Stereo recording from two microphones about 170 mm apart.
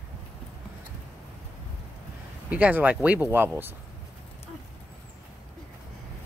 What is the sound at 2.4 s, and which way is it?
Speech, 10° right (ahead or behind).